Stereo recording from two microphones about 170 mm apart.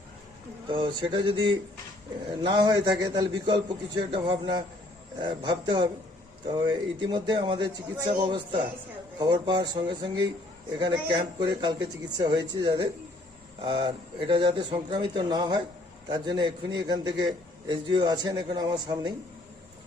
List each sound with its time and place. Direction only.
0.7 s a man's voice: 25° right (ahead or behind)